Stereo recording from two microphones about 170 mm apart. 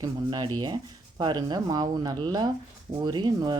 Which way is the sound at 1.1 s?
25° right (ahead or behind).